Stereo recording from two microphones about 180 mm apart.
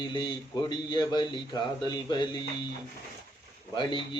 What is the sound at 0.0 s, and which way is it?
A man's voice, 25° left (ahead or behind).